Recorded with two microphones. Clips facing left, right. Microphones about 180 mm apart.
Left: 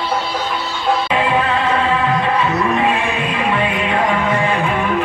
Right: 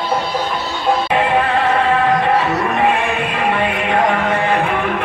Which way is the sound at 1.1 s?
60° right (ahead or behind).